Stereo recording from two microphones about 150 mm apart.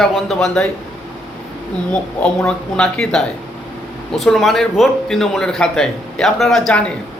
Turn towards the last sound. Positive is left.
turn(degrees=5)  # may be behind; listen again after turning